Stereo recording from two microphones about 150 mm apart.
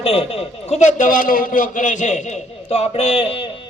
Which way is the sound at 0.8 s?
60° left (ahead or behind).